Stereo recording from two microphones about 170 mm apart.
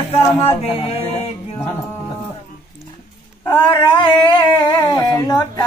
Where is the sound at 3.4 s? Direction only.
25° left (ahead or behind).